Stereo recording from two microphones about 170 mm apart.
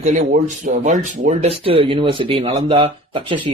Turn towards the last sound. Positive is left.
turn(degrees=-30)  # may be behind; listen again after turning